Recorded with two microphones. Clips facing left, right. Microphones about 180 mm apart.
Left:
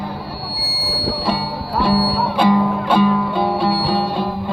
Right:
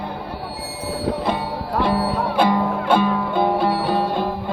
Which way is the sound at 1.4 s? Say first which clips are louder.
Left 2 dB; 50° right (ahead or behind).